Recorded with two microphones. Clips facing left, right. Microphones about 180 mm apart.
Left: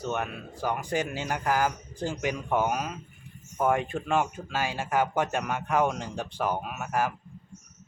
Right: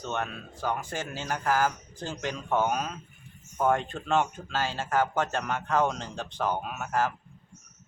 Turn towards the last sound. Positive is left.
turn(degrees=10)  # may be behind; listen again after turning